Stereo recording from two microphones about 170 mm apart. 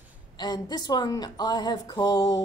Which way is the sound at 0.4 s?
25° left (ahead or behind).